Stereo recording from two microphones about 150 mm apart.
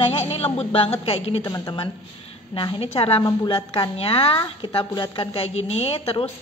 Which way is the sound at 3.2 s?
30° left (ahead or behind).